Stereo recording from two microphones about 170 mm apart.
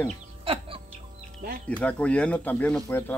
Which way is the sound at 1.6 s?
10° left (ahead or behind).